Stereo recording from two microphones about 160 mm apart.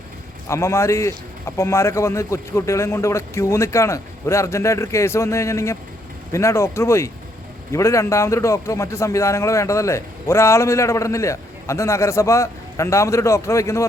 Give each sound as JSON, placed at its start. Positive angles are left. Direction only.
{"t": 0.4, "sound": "a man's voice", "side_deg": 15}